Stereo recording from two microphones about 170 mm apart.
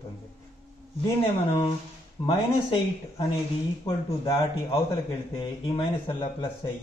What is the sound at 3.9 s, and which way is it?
A man's voice, 30° left (ahead or behind).